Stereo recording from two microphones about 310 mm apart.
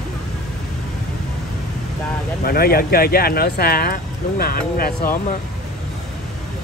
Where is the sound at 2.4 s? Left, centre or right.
Left.